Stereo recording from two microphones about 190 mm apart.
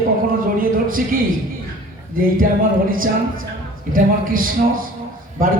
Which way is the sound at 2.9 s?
45° right (ahead or behind).